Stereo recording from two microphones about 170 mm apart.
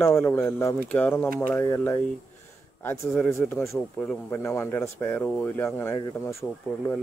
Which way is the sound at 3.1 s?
Centre (ahead or behind).